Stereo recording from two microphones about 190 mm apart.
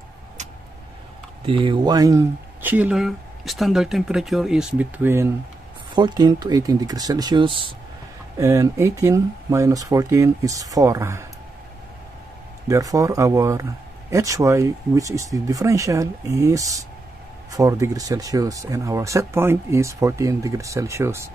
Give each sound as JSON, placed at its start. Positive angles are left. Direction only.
{"t": 1.4, "sound": "speech", "side_deg": -30}
{"t": 5.9, "sound": "speech", "side_deg": -25}
{"t": 8.4, "sound": "speech", "side_deg": -15}
{"t": 12.6, "sound": "speech", "side_deg": -15}